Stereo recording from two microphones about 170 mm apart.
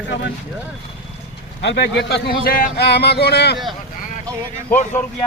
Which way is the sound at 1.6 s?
85° left.